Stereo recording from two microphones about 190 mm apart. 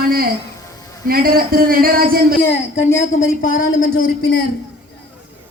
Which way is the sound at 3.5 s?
90° left.